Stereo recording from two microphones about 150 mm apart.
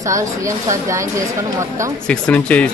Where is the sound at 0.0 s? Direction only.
20° right (ahead or behind).